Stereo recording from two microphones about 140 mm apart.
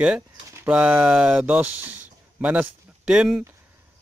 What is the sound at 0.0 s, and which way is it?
Speech, 10° right (ahead or behind).